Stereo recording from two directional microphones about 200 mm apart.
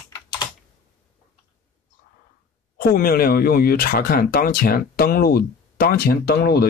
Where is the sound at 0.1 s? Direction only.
20° left (ahead or behind).